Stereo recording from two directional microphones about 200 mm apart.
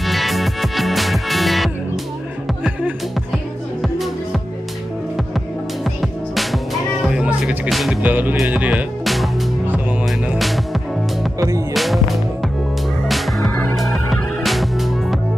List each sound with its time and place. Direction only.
0.0 s music: centre (ahead or behind)
5.9 s music: centre (ahead or behind)
11.3 s music: 15° right (ahead or behind)
11.7 s music: centre (ahead or behind)